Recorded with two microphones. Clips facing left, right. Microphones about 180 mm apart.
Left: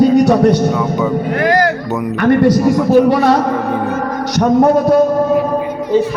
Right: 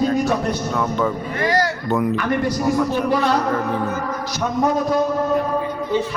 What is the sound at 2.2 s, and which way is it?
Speech, 70° left (ahead or behind).